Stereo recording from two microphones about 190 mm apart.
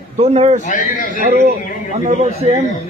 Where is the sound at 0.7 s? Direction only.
45° left (ahead or behind).